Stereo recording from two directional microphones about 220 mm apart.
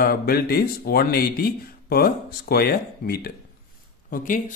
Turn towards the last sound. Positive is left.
turn(degrees=40)  # may be behind; listen again after turning